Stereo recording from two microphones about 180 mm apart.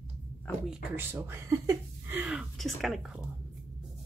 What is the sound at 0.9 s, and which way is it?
Speech, 10° right (ahead or behind).